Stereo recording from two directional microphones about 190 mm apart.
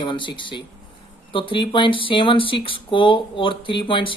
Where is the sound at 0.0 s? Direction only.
25° left (ahead or behind).